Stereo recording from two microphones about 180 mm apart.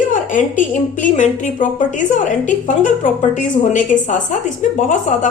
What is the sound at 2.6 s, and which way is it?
A woman's voice, 45° left (ahead or behind).